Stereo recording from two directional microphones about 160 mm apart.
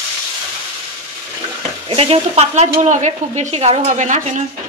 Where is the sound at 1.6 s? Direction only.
35° right (ahead or behind).